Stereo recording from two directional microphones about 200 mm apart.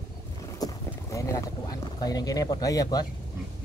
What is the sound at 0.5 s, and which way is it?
Speech, 15° left (ahead or behind).